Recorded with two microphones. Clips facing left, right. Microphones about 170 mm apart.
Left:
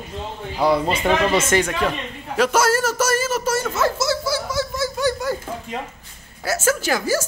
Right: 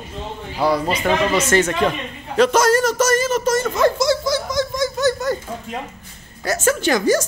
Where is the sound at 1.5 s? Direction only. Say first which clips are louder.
Right 3 dB; 10° left (ahead or behind).